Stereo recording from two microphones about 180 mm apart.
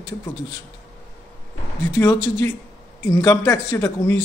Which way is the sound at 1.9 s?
15° left (ahead or behind).